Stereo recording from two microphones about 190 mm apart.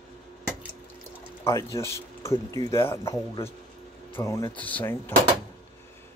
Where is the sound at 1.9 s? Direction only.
15° left (ahead or behind).